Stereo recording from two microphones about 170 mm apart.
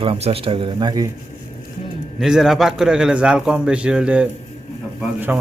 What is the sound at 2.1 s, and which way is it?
A man's voice, 5° right (ahead or behind).